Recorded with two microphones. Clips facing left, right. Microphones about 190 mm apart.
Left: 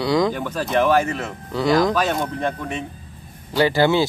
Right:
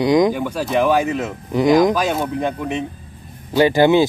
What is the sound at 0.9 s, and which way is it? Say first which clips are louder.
Speech: right 2 dB; 15° right (ahead or behind).